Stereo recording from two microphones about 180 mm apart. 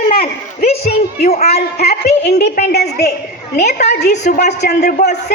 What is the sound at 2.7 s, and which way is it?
Speech, 65° left (ahead or behind).